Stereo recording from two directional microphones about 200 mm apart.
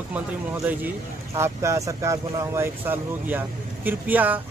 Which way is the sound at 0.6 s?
10° right (ahead or behind).